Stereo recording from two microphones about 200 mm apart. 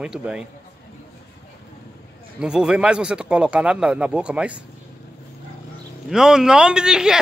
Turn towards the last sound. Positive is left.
turn(degrees=-5)  # may be behind; listen again after turning